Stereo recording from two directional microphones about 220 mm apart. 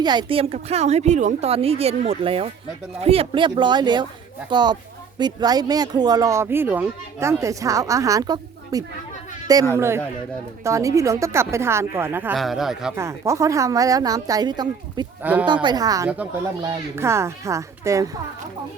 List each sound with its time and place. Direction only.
0.0 s a woman's voice: 20° right (ahead or behind); by 12.9 s centre (ahead or behind)
13.0 s speech: 15° right (ahead or behind)
15.2 s speech: 5° right (ahead or behind)